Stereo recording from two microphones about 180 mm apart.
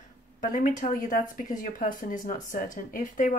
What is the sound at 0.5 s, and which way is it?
Speech, 45° left (ahead or behind).